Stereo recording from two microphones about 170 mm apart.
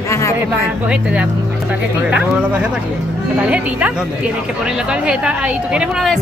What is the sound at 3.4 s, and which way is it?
Speech, 10° right (ahead or behind).